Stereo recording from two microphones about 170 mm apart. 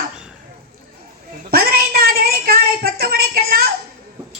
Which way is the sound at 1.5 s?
60° right (ahead or behind).